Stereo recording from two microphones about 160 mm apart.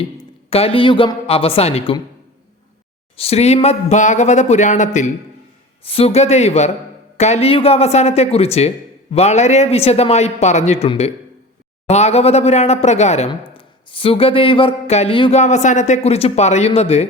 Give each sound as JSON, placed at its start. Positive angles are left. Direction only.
{"t": 0.5, "sound": "speech", "side_deg": 35}
{"t": 3.2, "sound": "a man's voice", "side_deg": 40}
{"t": 5.8, "sound": "a man's voice", "side_deg": 35}